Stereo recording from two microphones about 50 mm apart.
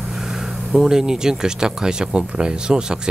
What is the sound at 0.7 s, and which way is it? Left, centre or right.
Speech, centre.